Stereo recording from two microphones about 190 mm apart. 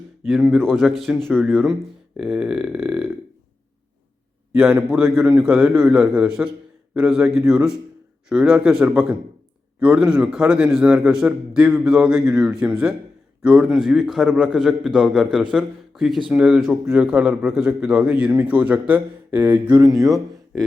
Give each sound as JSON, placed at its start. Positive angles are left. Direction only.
{"t": 0.5, "sound": "a man's voice", "side_deg": 0}
{"t": 4.5, "sound": "a man's voice", "side_deg": -5}
{"t": 20.1, "sound": "speech", "side_deg": 0}